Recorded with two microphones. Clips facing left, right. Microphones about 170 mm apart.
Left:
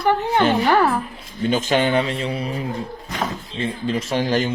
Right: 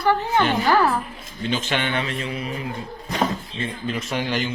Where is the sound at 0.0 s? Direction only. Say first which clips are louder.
Left 2 dB; 25° left (ahead or behind).